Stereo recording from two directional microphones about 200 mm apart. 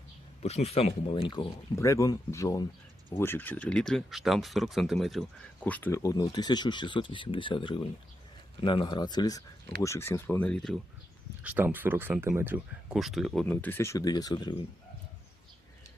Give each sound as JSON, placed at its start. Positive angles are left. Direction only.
{"t": 0.4, "sound": "speech", "side_deg": 30}
{"t": 11.4, "sound": "speech", "side_deg": -10}